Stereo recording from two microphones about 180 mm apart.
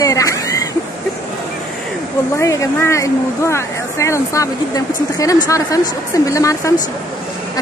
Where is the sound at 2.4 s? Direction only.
15° left (ahead or behind).